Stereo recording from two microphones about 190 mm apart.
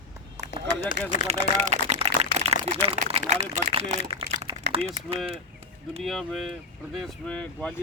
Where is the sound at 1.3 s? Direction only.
35° right (ahead or behind).